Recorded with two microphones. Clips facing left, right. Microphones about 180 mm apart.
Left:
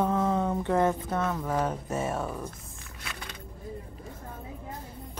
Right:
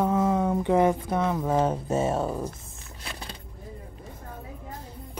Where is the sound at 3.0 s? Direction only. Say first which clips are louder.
Right 2 dB; 30° right (ahead or behind).